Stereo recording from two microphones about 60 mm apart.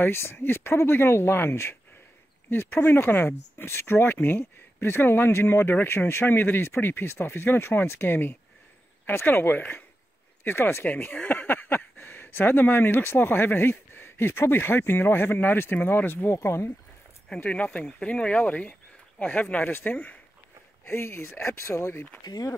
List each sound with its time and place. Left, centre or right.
0.0 s speech: left
10.9 s speech: left
17.4 s speech: left
20.8 s speech: left